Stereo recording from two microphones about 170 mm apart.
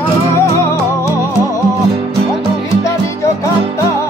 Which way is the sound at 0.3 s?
15° left (ahead or behind).